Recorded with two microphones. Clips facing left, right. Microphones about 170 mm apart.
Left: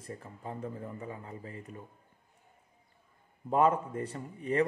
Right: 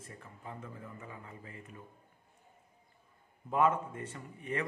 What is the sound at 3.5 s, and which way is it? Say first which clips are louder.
Speech: left 3 dB; 35° left (ahead or behind).